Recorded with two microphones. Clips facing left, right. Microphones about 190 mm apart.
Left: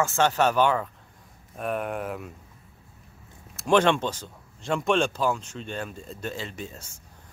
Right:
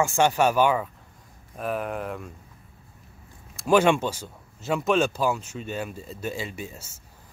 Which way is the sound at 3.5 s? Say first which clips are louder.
Right 1 dB; 5° right (ahead or behind).